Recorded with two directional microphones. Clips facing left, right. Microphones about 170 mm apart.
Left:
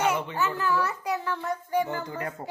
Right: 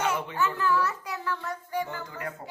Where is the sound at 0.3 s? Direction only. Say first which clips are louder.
Even; 10° left (ahead or behind).